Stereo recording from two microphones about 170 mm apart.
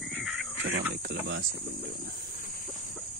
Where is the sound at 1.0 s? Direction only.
85° right.